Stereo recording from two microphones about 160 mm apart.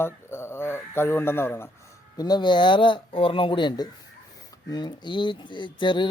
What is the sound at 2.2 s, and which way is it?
Speech, 25° left (ahead or behind).